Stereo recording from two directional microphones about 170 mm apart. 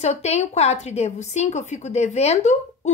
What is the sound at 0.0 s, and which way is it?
A woman's voice, 40° left (ahead or behind).